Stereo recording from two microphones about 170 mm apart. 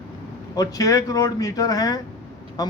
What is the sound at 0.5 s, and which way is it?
A man's voice, 20° left (ahead or behind).